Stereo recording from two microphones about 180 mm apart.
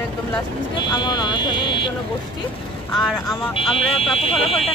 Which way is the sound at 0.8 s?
25° left (ahead or behind).